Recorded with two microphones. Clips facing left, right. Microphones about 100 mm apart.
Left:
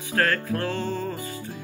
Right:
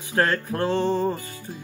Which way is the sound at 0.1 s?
25° right (ahead or behind).